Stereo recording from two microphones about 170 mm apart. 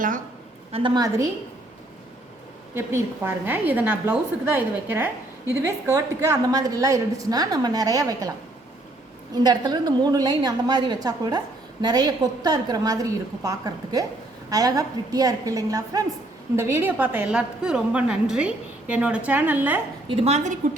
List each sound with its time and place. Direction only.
0.7 s a woman's voice: 30° right (ahead or behind)
2.7 s a woman's voice: 15° right (ahead or behind)
9.3 s a woman's voice: 25° right (ahead or behind)
20.1 s a woman's voice: 35° right (ahead or behind)